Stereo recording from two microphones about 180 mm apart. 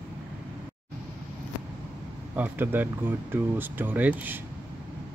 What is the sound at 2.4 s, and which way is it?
Speech, 10° right (ahead or behind).